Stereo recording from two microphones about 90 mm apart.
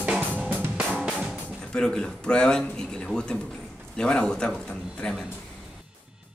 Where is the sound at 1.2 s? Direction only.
10° left (ahead or behind).